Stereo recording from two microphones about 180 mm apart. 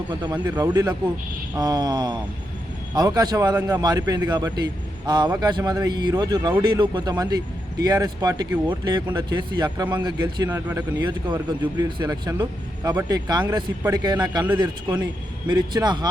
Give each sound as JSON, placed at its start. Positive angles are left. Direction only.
{"t": 0.3, "sound": "speech", "side_deg": -10}
{"t": 0.7, "sound": "speech", "side_deg": -20}